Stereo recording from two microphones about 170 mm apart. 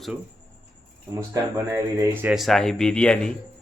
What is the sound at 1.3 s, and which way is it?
Speech, 20° right (ahead or behind).